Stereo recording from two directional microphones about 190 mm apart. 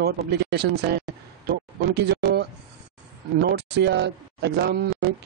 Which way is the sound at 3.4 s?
60° right (ahead or behind).